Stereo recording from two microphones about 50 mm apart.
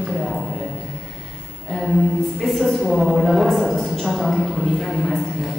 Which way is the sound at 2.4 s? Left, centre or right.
Centre.